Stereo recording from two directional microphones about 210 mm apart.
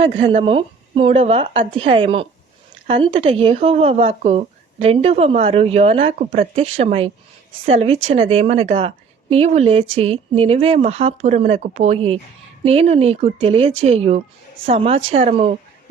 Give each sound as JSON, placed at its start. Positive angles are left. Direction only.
{"t": 0.0, "sound": "speech", "side_deg": -25}